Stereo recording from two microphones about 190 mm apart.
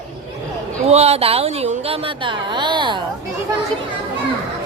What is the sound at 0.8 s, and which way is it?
Speech, 35° right (ahead or behind).